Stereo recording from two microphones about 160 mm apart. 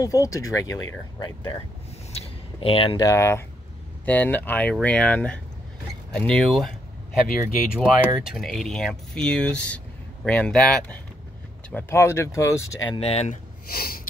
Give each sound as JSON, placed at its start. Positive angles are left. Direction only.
{"t": 0.0, "sound": "speech", "side_deg": 20}
{"t": 2.1, "sound": "a sound", "side_deg": 35}
{"t": 3.0, "sound": "speech", "side_deg": 20}
{"t": 7.7, "sound": "speech", "side_deg": -5}
{"t": 12.9, "sound": "speech", "side_deg": 40}
{"t": 13.7, "sound": "snort", "side_deg": 70}